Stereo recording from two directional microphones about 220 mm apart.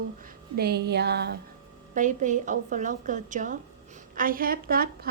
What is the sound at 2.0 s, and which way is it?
A woman's voice, 35° right (ahead or behind).